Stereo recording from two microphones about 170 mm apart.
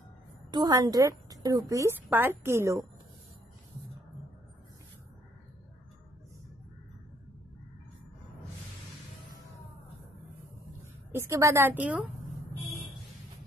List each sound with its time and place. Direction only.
0.5 s a woman's voice: 25° right (ahead or behind)
11.1 s a woman's voice: 15° right (ahead or behind)